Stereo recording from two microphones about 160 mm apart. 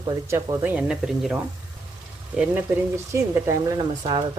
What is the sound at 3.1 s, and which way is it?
Speech, 20° right (ahead or behind).